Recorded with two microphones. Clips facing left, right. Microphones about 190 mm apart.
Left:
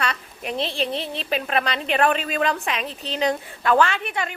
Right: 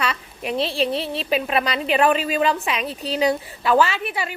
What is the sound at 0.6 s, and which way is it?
Speech, 35° right (ahead or behind).